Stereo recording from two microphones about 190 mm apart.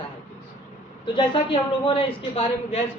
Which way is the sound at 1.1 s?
25° left (ahead or behind).